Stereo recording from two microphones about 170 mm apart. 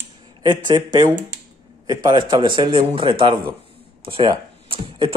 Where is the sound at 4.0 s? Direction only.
30° right (ahead or behind).